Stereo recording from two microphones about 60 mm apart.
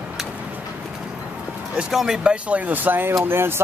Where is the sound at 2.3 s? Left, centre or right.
Right.